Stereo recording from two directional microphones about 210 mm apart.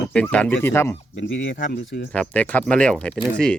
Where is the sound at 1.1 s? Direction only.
60° left (ahead or behind).